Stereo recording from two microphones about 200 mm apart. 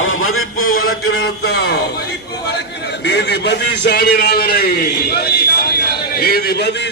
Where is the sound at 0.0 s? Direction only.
90° left.